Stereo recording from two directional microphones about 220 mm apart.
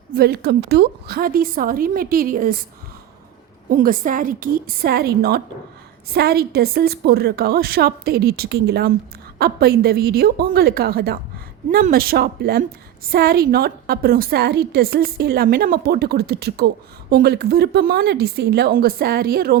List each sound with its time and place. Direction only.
0.1 s a woman's voice: 45° right (ahead or behind)
3.7 s a woman's voice: 40° right (ahead or behind)